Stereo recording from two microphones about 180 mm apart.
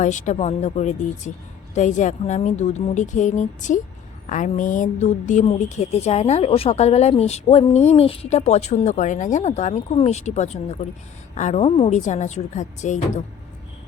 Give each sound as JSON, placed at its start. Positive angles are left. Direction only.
{"t": 0.0, "sound": "a woman's voice", "side_deg": 45}